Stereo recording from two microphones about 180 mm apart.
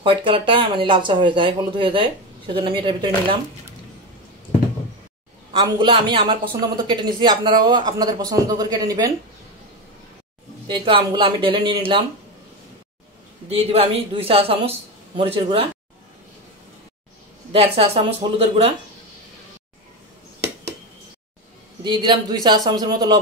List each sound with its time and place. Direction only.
0.0 s speech: 30° right (ahead or behind)
5.5 s speech: 25° right (ahead or behind)
10.7 s speech: 30° right (ahead or behind)
13.5 s speech: 30° right (ahead or behind)
17.5 s speech: 35° right (ahead or behind)
21.8 s speech: 25° right (ahead or behind)